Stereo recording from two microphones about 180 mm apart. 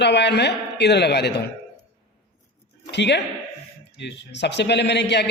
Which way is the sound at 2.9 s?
75° left (ahead or behind).